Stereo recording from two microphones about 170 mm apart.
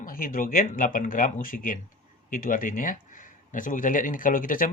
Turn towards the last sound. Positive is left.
turn(degrees=55)  # may be behind; listen again after turning